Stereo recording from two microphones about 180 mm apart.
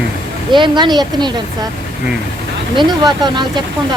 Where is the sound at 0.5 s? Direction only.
25° right (ahead or behind).